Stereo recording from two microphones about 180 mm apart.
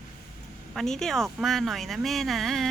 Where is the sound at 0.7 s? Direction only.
Centre (ahead or behind).